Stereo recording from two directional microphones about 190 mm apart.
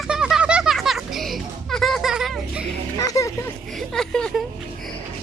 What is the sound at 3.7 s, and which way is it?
Speech, centre (ahead or behind).